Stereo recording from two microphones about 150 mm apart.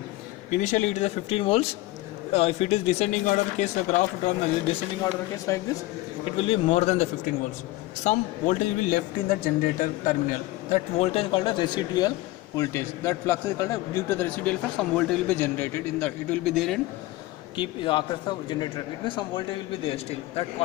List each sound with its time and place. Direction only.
0.6 s speech: 50° left (ahead or behind)
5.0 s speech: 25° left (ahead or behind)
6.3 s a man's voice: 40° left (ahead or behind); by 10.1 s 60° left (ahead or behind)
10.7 s a man's voice: 45° left (ahead or behind); by 12.1 s 30° left (ahead or behind)
12.5 s a man's voice: 20° left (ahead or behind)
15.3 s a man's voice: 15° left (ahead or behind)
17.6 s a man's voice: 30° left (ahead or behind)